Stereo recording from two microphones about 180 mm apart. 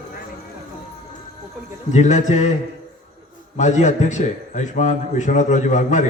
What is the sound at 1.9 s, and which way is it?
Speech, 40° left (ahead or behind).